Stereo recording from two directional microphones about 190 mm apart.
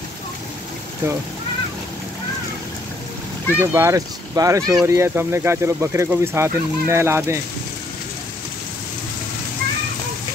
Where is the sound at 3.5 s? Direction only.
15° right (ahead or behind).